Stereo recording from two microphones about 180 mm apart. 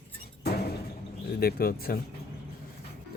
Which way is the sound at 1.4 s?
55° left (ahead or behind).